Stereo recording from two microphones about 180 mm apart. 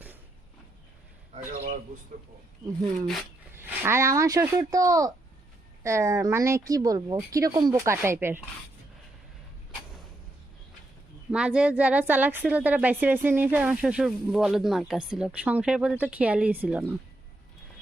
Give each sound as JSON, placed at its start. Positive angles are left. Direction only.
{"t": 2.1, "sound": "speech", "side_deg": -50}
{"t": 3.5, "sound": "a woman's voice", "side_deg": -15}
{"t": 11.3, "sound": "a woman's voice", "side_deg": -5}